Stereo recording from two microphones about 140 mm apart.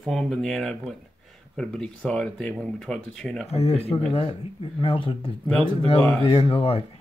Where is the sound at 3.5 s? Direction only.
45° left (ahead or behind).